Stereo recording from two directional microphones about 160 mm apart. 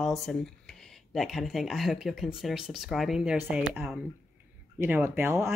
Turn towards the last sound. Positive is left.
turn(degrees=-15)  # may be behind; listen again after turning